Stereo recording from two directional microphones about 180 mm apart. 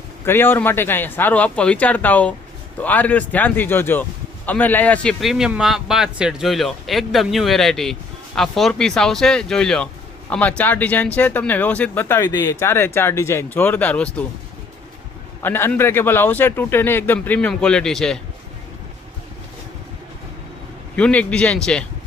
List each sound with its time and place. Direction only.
0.3 s a man's voice: 10° left (ahead or behind)
15.4 s speech: 15° left (ahead or behind)
20.9 s speech: 5° left (ahead or behind)